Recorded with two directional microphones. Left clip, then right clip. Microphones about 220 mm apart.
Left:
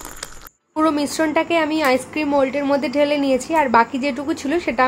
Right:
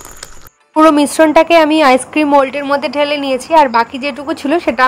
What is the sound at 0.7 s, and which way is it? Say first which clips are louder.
A woman's voice: right 10 dB; 30° right (ahead or behind).